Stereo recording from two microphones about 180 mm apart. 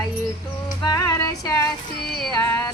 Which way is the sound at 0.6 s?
20° left (ahead or behind).